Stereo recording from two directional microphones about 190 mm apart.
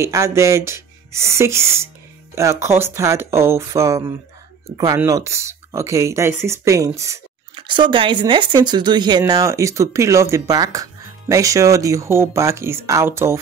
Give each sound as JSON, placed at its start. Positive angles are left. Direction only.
{"t": 0.0, "sound": "speech", "side_deg": -15}